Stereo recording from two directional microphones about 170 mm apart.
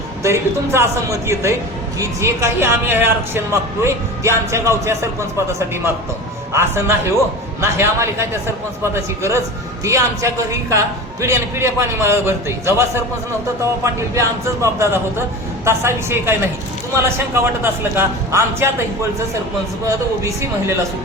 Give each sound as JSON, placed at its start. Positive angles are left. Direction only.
{"t": 0.2, "sound": "speech", "side_deg": -15}
{"t": 13.8, "sound": "speech", "side_deg": -15}
{"t": 20.2, "sound": "speech", "side_deg": -15}